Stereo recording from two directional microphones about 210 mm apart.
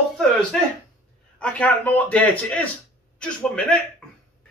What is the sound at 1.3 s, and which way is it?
A man's voice, 5° left (ahead or behind).